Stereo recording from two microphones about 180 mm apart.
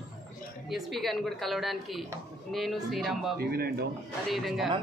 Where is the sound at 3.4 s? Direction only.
60° right (ahead or behind).